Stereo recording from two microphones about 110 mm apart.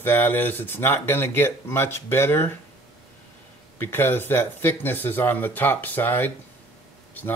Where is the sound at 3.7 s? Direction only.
20° left (ahead or behind).